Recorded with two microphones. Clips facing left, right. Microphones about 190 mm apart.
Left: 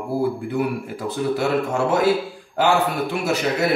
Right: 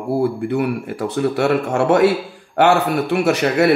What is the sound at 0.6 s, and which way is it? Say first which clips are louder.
A man's voice: right 3 dB; 70° right (ahead or behind).